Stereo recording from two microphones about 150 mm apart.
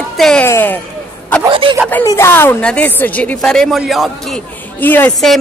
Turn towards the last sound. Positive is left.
turn(degrees=10)  # may be behind; listen again after turning